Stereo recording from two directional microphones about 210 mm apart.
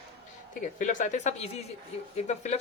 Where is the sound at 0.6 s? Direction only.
35° left (ahead or behind).